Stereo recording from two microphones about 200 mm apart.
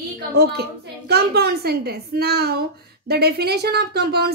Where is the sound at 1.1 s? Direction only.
55° right (ahead or behind).